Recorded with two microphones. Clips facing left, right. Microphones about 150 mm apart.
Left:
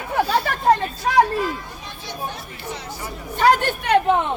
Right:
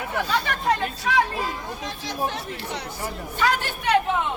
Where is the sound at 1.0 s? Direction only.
45° left (ahead or behind).